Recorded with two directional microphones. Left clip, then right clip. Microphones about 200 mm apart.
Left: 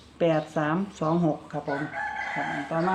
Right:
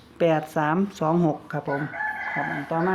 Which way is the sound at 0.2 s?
55° right (ahead or behind).